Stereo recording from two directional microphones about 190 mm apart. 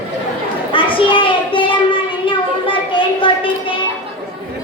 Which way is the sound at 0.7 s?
25° left (ahead or behind).